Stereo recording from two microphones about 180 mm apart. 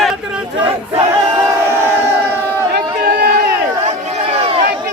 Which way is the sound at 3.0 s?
60° right (ahead or behind).